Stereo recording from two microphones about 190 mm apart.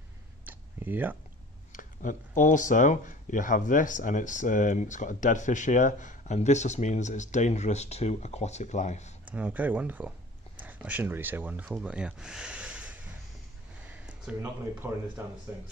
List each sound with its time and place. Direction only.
0.5 s a sound: 10° right (ahead or behind)
1.7 s speech: 45° left (ahead or behind)
9.3 s speech: 10° right (ahead or behind)
14.0 s speech: 10° right (ahead or behind)